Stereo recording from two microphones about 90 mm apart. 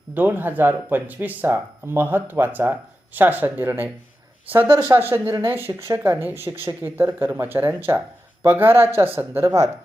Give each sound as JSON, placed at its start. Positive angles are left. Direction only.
{"t": 0.1, "sound": "speech", "side_deg": -20}